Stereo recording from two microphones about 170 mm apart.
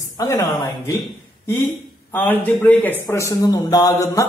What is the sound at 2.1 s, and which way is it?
A man's voice, 10° left (ahead or behind).